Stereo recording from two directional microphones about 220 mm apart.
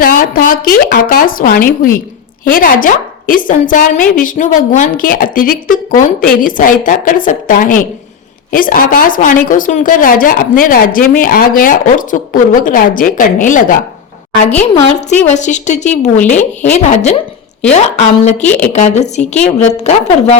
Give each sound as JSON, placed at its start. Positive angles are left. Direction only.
{"t": 0.0, "sound": "a woman's voice", "side_deg": 40}
{"t": 15.3, "sound": "a woman's voice", "side_deg": 35}